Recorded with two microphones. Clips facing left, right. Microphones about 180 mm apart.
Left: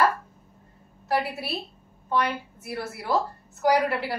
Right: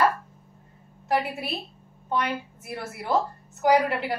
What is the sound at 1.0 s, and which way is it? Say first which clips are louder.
Speech: right 1 dB; 20° right (ahead or behind).